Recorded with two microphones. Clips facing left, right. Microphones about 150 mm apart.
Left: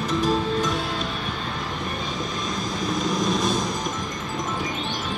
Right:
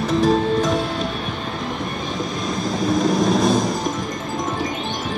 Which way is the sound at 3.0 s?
50° right (ahead or behind).